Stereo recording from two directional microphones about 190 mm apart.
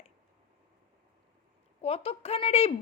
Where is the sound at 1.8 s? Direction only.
30° left (ahead or behind).